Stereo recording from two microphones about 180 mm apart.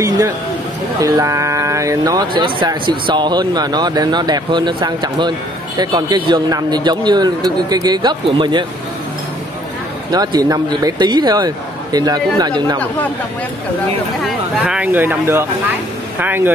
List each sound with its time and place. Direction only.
1.0 s speech: 20° right (ahead or behind)
10.1 s speech: 20° right (ahead or behind)
14.2 s speech: 5° right (ahead or behind)